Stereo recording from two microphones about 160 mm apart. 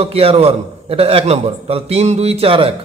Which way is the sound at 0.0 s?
40° right (ahead or behind).